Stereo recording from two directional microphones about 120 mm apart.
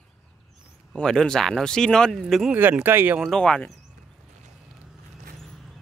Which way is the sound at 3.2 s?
5° left (ahead or behind).